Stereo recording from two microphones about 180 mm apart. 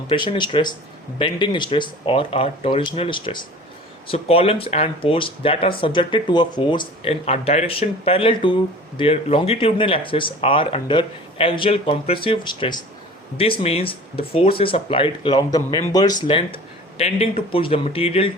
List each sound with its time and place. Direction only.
0.1 s speech: 30° left (ahead or behind)